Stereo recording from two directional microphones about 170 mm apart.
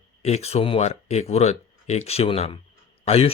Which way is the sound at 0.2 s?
40° left (ahead or behind).